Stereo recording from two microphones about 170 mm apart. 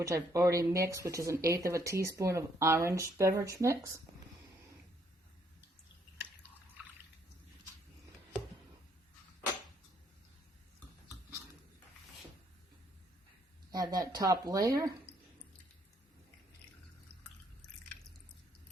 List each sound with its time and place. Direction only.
0.0 s speech: 20° right (ahead or behind)
13.7 s speech: 20° right (ahead or behind)